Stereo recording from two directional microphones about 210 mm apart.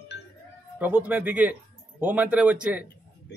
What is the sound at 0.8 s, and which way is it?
Speech, 10° right (ahead or behind).